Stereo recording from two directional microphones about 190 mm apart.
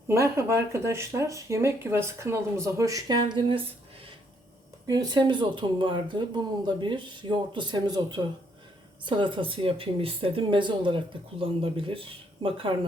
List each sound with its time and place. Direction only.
0.1 s speech: 15° right (ahead or behind)
4.9 s speech: 20° right (ahead or behind)